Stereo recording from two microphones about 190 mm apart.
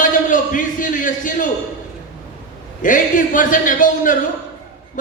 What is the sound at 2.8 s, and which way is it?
A man's voice, 45° left (ahead or behind).